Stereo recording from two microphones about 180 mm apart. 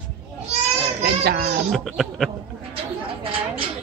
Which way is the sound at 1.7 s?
Centre (ahead or behind).